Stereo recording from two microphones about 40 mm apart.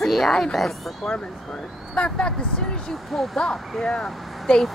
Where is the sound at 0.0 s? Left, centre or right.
Centre.